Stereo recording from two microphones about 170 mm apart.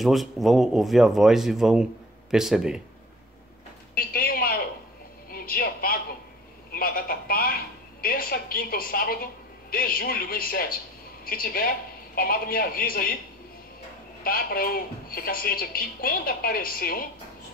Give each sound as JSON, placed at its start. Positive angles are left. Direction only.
{"t": 0.0, "sound": "speech", "side_deg": 0}
{"t": 3.9, "sound": "a sound", "side_deg": 60}
{"t": 8.0, "sound": "a woman's voice", "side_deg": 60}
{"t": 14.2, "sound": "speech", "side_deg": 60}